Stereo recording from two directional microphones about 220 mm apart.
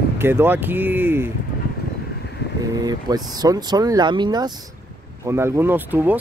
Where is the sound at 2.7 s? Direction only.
20° right (ahead or behind).